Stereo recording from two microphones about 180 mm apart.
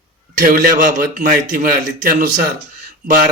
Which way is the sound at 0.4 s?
50° right (ahead or behind).